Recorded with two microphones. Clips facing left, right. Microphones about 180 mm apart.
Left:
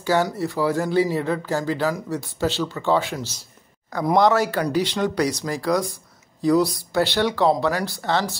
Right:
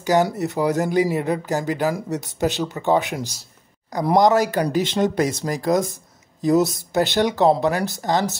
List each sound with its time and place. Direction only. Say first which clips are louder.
0.0 s speech: right 2 dB; 15° right (ahead or behind)